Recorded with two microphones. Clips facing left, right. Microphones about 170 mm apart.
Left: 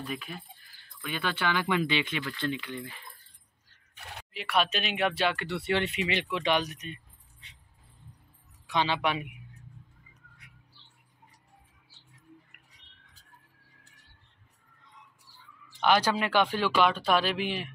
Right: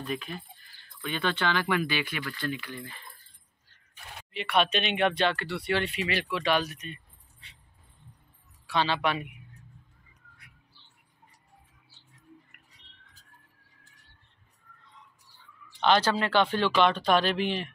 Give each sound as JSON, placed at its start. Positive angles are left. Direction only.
{"t": 0.0, "sound": "speech", "side_deg": 5}
{"t": 4.3, "sound": "speech", "side_deg": 0}
{"t": 5.4, "sound": "speech", "side_deg": 20}
{"t": 8.6, "sound": "speech", "side_deg": 15}
{"t": 15.8, "sound": "speech", "side_deg": 10}